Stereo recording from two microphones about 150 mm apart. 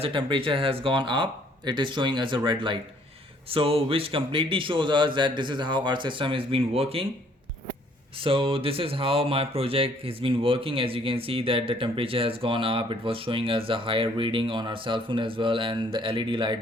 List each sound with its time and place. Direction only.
0.0 s speech: 35° right (ahead or behind)
8.2 s speech: 35° right (ahead or behind)